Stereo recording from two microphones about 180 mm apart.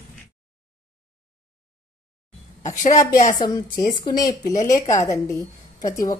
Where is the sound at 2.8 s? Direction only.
40° left (ahead or behind).